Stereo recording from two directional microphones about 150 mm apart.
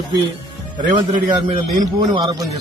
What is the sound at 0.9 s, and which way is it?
A man's voice, 30° right (ahead or behind).